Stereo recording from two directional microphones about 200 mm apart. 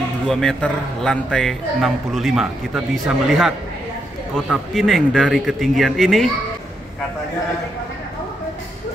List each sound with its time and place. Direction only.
0.3 s a man's voice: centre (ahead or behind)